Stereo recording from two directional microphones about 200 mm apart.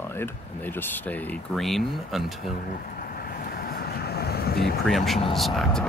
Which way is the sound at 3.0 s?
45° left (ahead or behind).